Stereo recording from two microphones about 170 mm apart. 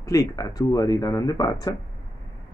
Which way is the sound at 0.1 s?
20° left (ahead or behind).